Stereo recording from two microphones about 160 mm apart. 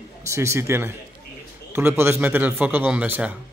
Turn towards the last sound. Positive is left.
turn(degrees=-10)  # may be behind; listen again after turning